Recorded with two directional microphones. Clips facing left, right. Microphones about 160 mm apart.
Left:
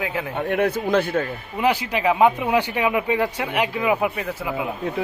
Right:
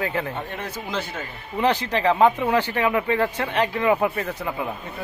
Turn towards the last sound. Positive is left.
turn(degrees=5)  # may be behind; listen again after turning